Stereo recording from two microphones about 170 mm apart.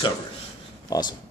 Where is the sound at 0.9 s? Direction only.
25° left (ahead or behind).